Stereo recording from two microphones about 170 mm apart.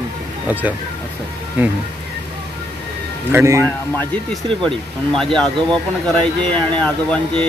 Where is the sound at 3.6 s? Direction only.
5° left (ahead or behind).